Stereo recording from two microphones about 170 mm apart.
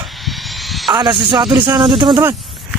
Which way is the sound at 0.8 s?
25° right (ahead or behind).